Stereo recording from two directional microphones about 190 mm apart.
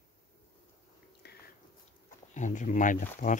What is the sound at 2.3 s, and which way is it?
Speech, 40° left (ahead or behind).